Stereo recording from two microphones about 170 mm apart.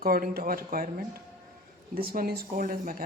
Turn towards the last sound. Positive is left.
turn(degrees=-55)  # may be behind; listen again after turning